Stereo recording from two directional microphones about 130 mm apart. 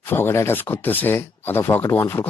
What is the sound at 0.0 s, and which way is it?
Speech, 20° left (ahead or behind).